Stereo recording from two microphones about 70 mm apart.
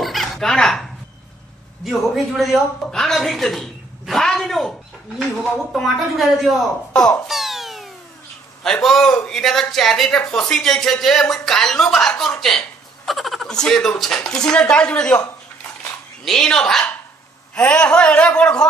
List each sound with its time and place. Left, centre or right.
0.0 s a sound: centre
1.9 s a woman's voice: centre
6.9 s speech: centre
7.2 s cat: centre
8.8 s a woman's voice: centre
16.3 s speech: centre